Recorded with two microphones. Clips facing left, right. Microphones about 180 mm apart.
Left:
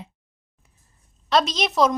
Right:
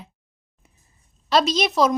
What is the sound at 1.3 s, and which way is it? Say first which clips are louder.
Speech: right 2 dB; centre (ahead or behind).